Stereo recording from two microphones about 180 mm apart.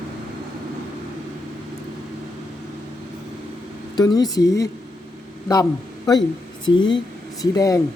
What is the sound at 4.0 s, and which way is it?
A man's voice, 20° left (ahead or behind).